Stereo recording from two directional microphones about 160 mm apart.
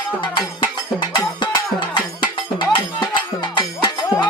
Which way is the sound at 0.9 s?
30° left (ahead or behind).